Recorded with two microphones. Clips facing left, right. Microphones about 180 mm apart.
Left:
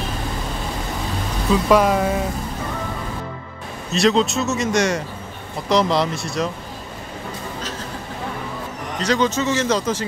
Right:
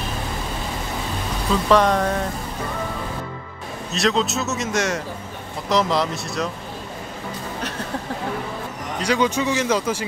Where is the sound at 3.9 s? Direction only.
Centre (ahead or behind).